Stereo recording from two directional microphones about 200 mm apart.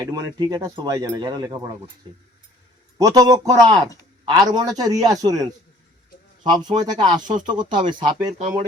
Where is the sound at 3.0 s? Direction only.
15° right (ahead or behind).